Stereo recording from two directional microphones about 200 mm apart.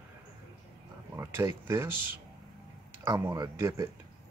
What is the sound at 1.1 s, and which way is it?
Speech, 15° right (ahead or behind).